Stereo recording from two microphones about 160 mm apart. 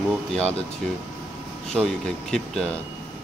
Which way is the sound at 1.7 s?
5° left (ahead or behind).